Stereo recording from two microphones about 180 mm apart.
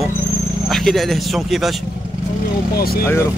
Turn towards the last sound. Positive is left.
turn(degrees=60)  # may be behind; listen again after turning